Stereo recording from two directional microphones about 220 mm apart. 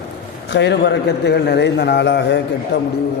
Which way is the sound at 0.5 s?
50° left (ahead or behind).